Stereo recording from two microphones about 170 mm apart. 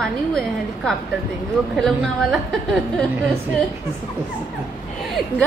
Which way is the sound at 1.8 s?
Centre (ahead or behind).